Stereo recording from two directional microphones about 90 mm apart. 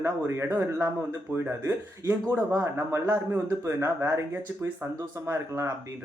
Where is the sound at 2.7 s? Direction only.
30° right (ahead or behind).